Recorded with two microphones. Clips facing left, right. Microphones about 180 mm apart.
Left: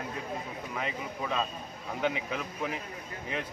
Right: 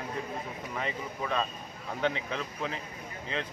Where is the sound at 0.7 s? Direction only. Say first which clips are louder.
Even; centre (ahead or behind).